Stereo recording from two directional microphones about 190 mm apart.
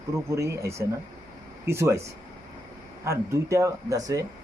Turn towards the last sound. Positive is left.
turn(degrees=-20)  # may be behind; listen again after turning